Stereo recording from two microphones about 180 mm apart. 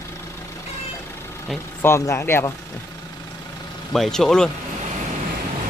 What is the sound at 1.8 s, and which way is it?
Speech, 15° left (ahead or behind).